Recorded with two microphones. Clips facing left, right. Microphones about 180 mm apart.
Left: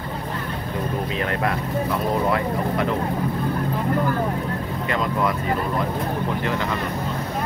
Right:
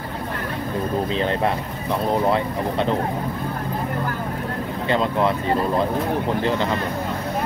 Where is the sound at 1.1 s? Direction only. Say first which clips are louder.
Right 2 dB; 30° right (ahead or behind).